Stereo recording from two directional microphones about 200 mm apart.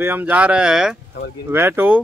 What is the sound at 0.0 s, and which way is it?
Speech, 10° right (ahead or behind).